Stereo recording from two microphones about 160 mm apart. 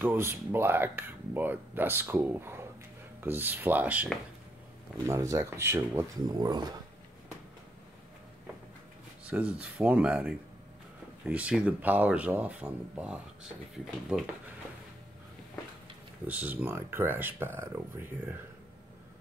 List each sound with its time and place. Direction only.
0.0 s speech: 15° right (ahead or behind)
9.2 s speech: 5° right (ahead or behind)
16.3 s speech: 10° right (ahead or behind)